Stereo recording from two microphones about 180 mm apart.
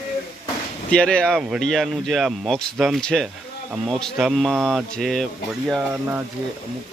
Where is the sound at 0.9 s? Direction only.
5° left (ahead or behind).